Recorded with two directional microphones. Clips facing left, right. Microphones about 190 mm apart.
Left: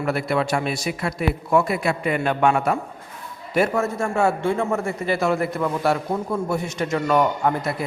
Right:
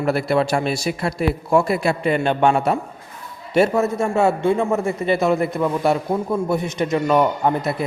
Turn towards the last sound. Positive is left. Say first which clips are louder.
# right 2 dB
turn(degrees=-20)  # may be behind; listen again after turning